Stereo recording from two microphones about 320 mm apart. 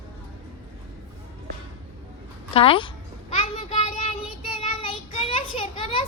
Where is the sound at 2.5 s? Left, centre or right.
Centre.